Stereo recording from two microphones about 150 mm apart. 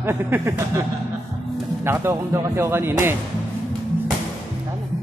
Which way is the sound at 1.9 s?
15° right (ahead or behind).